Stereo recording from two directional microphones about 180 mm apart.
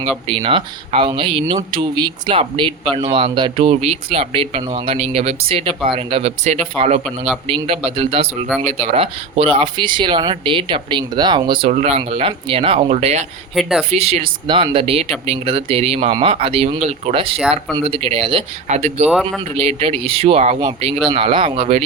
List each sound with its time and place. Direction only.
0.3 s speech: 30° right (ahead or behind)
13.6 s speech: 5° right (ahead or behind)
13.9 s speech: 35° right (ahead or behind)
19.0 s speech: centre (ahead or behind)
19.5 s speech: 35° right (ahead or behind)